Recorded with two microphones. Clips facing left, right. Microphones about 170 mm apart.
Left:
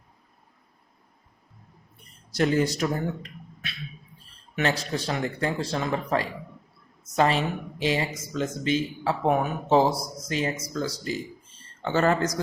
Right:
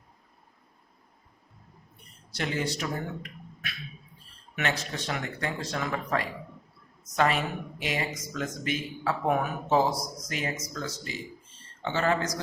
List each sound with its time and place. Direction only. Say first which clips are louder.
2.3 s speech: left 8 dB; 40° left (ahead or behind)
4.5 s a man's voice: left 5 dB; 35° left (ahead or behind)